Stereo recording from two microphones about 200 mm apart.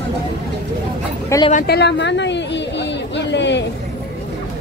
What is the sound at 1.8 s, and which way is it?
Speech, 60° left (ahead or behind).